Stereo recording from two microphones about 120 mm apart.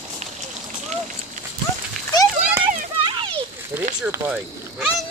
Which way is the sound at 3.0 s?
45° right (ahead or behind).